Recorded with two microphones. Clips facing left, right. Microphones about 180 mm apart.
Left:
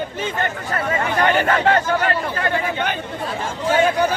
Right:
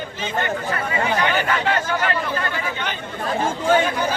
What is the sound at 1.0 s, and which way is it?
Speech, 50° left (ahead or behind).